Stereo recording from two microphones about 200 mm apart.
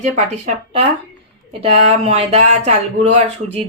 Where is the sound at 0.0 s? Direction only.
35° right (ahead or behind).